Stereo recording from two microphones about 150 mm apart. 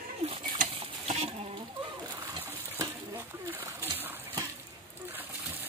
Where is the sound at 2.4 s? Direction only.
15° right (ahead or behind).